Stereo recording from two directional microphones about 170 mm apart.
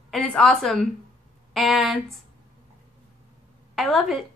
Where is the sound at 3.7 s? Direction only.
Centre (ahead or behind).